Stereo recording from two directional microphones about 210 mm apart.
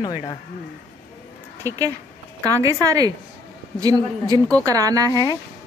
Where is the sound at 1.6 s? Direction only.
15° right (ahead or behind).